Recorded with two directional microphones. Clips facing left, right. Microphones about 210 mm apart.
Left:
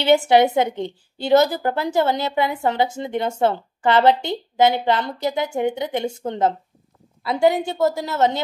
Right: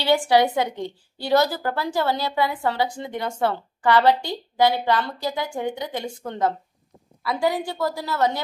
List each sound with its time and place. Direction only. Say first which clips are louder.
0.0 s a woman's voice: left 4 dB; 20° left (ahead or behind)